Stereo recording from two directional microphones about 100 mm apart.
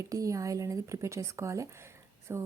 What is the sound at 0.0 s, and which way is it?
Speech, 35° right (ahead or behind).